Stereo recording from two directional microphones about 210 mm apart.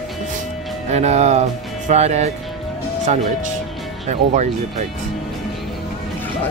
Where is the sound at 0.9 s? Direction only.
30° right (ahead or behind).